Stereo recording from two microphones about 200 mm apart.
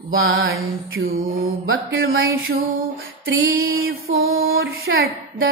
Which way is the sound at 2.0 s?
85° right.